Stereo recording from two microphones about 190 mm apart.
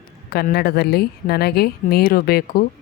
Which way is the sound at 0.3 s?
55° left (ahead or behind).